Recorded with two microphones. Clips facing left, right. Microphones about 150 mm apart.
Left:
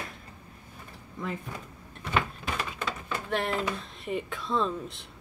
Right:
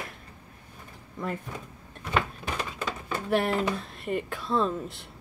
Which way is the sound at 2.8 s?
5° right (ahead or behind).